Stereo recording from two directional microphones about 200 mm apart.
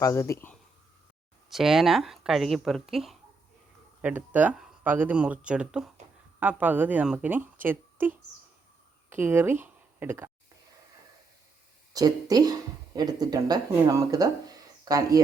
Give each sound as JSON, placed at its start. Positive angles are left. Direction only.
{"t": 0.0, "sound": "speech", "side_deg": 15}
{"t": 1.5, "sound": "speech", "side_deg": 0}
{"t": 11.9, "sound": "speech", "side_deg": -20}